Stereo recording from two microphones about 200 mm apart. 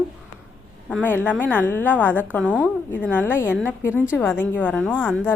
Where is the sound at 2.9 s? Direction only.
10° left (ahead or behind).